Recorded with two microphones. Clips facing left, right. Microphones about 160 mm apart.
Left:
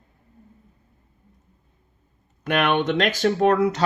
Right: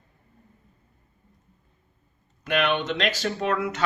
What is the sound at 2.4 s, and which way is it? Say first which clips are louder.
Speech: left 3 dB; 55° left (ahead or behind).